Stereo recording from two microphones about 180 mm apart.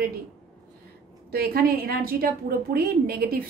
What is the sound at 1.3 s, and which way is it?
A woman's voice, 55° right (ahead or behind).